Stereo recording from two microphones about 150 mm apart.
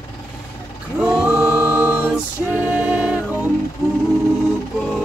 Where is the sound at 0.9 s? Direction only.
5° right (ahead or behind).